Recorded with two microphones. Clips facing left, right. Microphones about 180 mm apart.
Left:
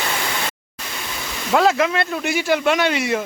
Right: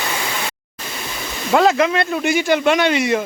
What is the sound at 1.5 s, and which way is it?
Speech, centre (ahead or behind).